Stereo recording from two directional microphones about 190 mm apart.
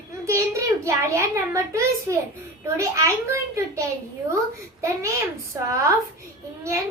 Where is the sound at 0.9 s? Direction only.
15° right (ahead or behind).